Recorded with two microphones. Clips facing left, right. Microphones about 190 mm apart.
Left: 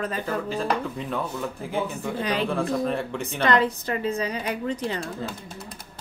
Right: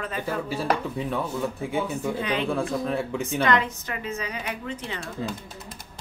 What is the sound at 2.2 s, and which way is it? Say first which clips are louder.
Speech: left 4 dB; 35° left (ahead or behind).